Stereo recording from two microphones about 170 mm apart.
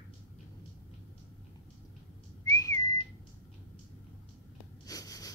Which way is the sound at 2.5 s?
20° left (ahead or behind).